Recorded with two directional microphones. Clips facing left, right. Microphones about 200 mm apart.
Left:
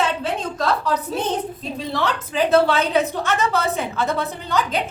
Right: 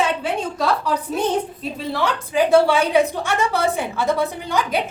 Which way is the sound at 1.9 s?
10° right (ahead or behind).